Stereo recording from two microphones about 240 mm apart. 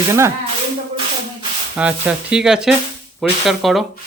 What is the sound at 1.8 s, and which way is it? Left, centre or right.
Speech, centre.